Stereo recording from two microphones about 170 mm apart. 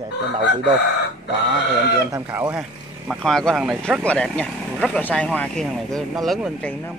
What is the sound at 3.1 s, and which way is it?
Speech, centre (ahead or behind).